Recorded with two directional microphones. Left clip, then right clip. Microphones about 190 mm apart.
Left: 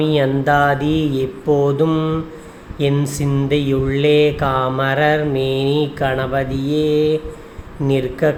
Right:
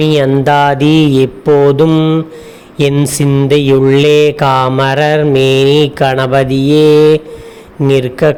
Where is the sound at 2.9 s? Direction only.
45° right (ahead or behind).